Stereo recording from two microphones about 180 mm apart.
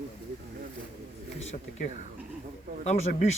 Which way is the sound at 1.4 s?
40° left (ahead or behind).